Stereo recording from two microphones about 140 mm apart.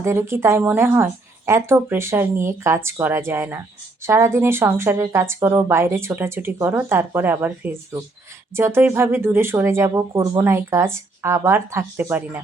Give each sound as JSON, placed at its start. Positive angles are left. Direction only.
{"t": 0.0, "sound": "a woman's voice", "side_deg": -20}